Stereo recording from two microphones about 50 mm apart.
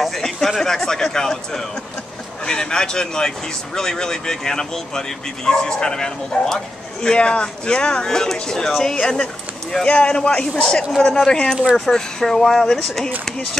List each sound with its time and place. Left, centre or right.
0.5 s speech: centre